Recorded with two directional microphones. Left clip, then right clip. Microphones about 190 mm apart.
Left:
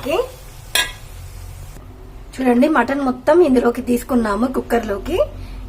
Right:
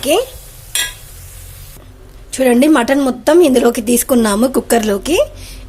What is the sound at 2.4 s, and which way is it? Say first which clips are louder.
A woman's voice: right 4 dB; 45° right (ahead or behind).